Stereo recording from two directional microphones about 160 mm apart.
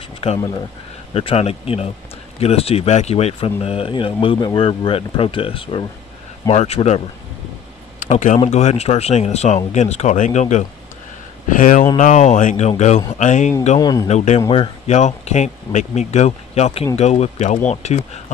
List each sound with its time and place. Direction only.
0.2 s speech: 40° left (ahead or behind)
8.0 s speech: 50° left (ahead or behind)
13.7 s speech: 25° left (ahead or behind)
14.0 s speech: 45° left (ahead or behind)